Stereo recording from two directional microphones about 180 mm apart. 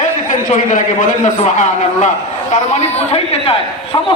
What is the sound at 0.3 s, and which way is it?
A man's voice, 45° left (ahead or behind).